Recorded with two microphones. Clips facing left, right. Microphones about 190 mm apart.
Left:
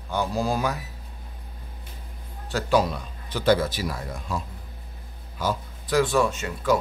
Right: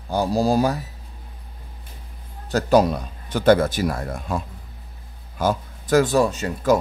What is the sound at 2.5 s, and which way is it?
Speech, 45° right (ahead or behind).